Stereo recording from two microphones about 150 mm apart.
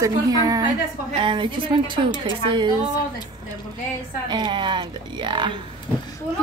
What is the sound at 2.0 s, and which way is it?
Speech, 30° left (ahead or behind).